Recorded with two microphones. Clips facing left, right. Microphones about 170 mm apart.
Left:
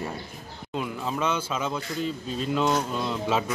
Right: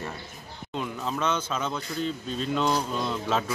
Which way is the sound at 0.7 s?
5° left (ahead or behind).